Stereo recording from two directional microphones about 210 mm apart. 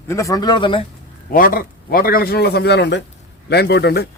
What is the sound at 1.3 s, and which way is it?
A man's voice, 40° left (ahead or behind).